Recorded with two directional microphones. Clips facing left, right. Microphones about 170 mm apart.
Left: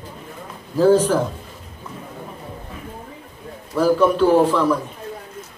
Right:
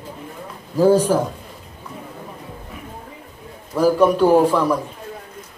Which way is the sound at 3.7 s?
10° right (ahead or behind).